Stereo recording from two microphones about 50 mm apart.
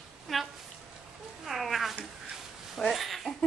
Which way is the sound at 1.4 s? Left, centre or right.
Centre.